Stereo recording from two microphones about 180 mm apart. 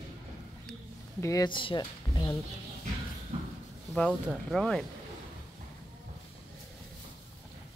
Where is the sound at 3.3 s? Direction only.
35° right (ahead or behind).